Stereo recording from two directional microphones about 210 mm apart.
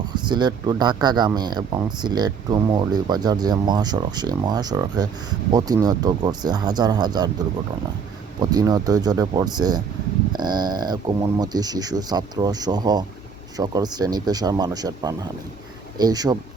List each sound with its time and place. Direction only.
0.1 s speech: 20° right (ahead or behind)